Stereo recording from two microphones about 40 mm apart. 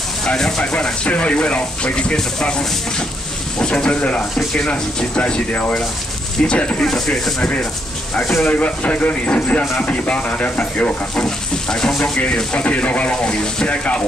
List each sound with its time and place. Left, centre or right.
0.6 s speech: left
3.5 s speech: left
5.5 s speech: left
6.4 s speech: left
6.8 s speech: centre
8.5 s speech: left
11.1 s speech: centre
12.0 s speech: left
13.2 s speech: left
13.7 s speech: left